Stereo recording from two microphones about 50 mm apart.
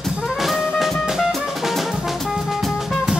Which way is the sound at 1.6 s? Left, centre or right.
Centre.